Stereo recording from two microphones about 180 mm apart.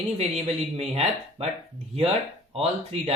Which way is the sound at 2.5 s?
35° right (ahead or behind).